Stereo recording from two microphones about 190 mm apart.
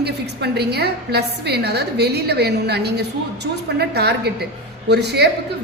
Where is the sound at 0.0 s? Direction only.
60° right (ahead or behind).